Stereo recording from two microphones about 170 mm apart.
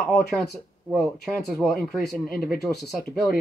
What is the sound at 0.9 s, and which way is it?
Speech, centre (ahead or behind).